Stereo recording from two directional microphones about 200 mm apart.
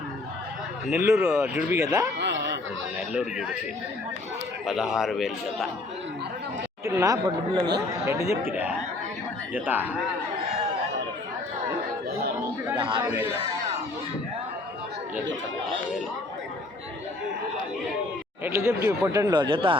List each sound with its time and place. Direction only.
0.9 s speech: 10° right (ahead or behind)
2.1 s a sound: 60° right (ahead or behind)
3.1 s a man's voice: 5° right (ahead or behind)
4.6 s a man's voice: centre (ahead or behind)
6.8 s speech: 15° right (ahead or behind)
9.6 s speech: 10° right (ahead or behind)
12.7 s a man's voice: 25° right (ahead or behind)
13.1 s speech: 10° right (ahead or behind)
18.4 s speech: 15° right (ahead or behind)